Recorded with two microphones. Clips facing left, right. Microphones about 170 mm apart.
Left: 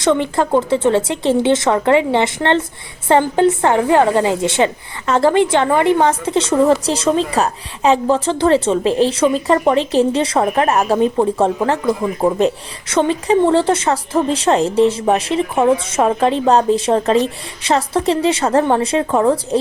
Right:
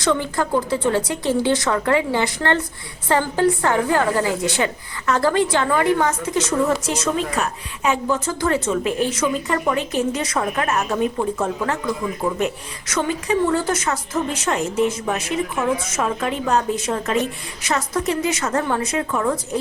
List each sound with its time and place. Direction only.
0.0 s a woman's voice: 25° left (ahead or behind)